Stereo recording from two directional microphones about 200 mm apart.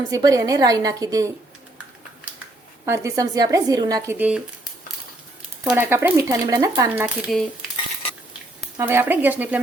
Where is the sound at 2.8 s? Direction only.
15° right (ahead or behind).